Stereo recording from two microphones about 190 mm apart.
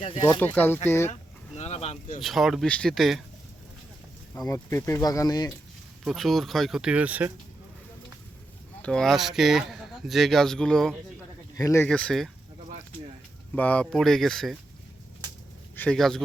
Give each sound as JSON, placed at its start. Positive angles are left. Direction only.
{"t": 0.0, "sound": "speech", "side_deg": 30}
{"t": 0.3, "sound": "speech", "side_deg": 10}
{"t": 1.5, "sound": "speech", "side_deg": 35}
{"t": 2.2, "sound": "a man's voice", "side_deg": 0}
{"t": 4.4, "sound": "speech", "side_deg": 15}
{"t": 6.1, "sound": "a man's voice", "side_deg": 0}
{"t": 8.8, "sound": "a man's voice", "side_deg": 5}
{"t": 11.5, "sound": "speech", "side_deg": 15}
{"t": 11.9, "sound": "a man's voice", "side_deg": 5}
{"t": 13.6, "sound": "a man's voice", "side_deg": 5}
{"t": 15.7, "sound": "speech", "side_deg": 5}